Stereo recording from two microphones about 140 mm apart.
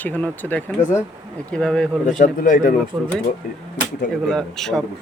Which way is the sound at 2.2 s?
75° left (ahead or behind).